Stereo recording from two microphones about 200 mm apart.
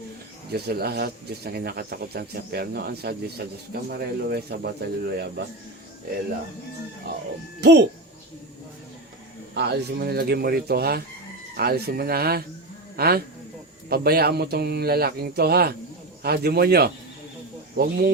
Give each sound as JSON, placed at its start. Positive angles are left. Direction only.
{"t": 0.5, "sound": "speech", "side_deg": -50}
{"t": 9.6, "sound": "speech", "side_deg": -55}